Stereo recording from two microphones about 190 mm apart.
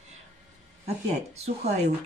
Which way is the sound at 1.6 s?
35° right (ahead or behind).